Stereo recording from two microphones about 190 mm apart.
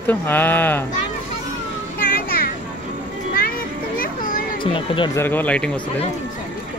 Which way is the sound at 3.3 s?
50° left (ahead or behind).